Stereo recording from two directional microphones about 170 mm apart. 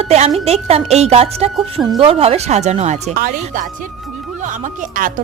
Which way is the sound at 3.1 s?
60° right (ahead or behind).